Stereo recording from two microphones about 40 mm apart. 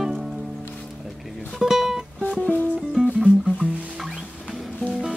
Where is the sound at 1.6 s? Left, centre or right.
Centre.